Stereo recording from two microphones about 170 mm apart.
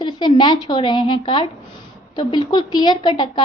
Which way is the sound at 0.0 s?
25° left (ahead or behind).